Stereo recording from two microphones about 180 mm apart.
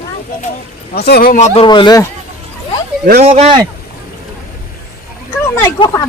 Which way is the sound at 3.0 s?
60° right (ahead or behind).